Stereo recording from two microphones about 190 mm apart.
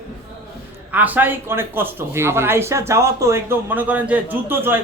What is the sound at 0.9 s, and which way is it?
Speech, 10° right (ahead or behind).